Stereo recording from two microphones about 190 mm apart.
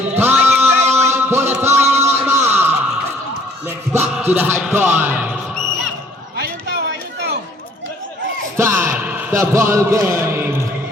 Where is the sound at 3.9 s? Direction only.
10° right (ahead or behind).